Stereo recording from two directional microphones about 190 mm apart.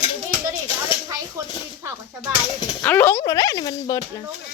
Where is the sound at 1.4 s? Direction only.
15° right (ahead or behind).